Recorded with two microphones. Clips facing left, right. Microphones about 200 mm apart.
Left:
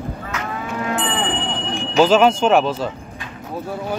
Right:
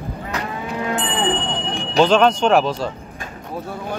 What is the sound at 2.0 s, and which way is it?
Speech, 5° left (ahead or behind).